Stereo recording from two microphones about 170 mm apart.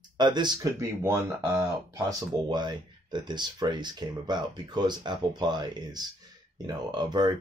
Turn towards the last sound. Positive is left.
turn(degrees=-25)  # may be behind; listen again after turning